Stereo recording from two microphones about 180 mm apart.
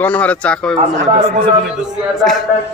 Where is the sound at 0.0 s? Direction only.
10° left (ahead or behind).